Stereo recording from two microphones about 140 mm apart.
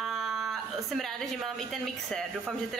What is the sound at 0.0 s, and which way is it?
A woman's voice, centre (ahead or behind).